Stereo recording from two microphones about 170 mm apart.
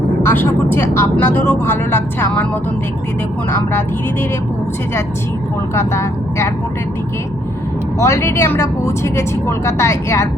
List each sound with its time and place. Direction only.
0.2 s speech: 10° left (ahead or behind)
3.5 s speech: 15° left (ahead or behind)
5.7 s speech: 15° left (ahead or behind)
7.9 s speech: 15° left (ahead or behind)